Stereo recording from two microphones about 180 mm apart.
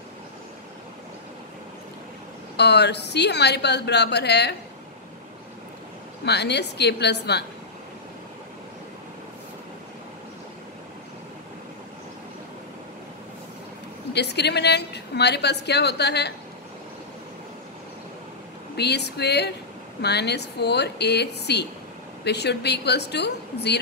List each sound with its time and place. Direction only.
2.5 s a woman's voice: 70° left (ahead or behind)
6.2 s a woman's voice: 70° left (ahead or behind)
14.1 s a woman's voice: 70° left (ahead or behind)
18.8 s a woman's voice: 70° left (ahead or behind)